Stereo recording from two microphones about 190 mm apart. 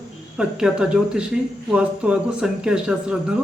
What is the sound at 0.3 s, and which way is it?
Speech, 5° right (ahead or behind).